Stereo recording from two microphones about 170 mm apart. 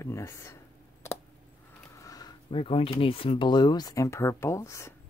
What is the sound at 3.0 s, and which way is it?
Speech, 35° left (ahead or behind).